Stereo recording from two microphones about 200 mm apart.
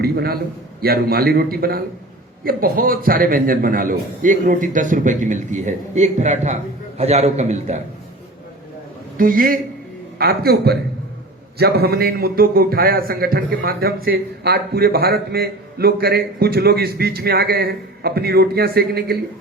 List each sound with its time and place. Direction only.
0.0 s a man's voice: 50° right (ahead or behind); by 7.8 s 35° right (ahead or behind)
9.1 s a man's voice: 45° right (ahead or behind)